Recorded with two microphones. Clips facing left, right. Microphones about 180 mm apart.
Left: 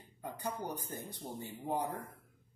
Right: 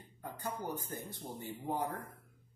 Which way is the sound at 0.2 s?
15° left (ahead or behind).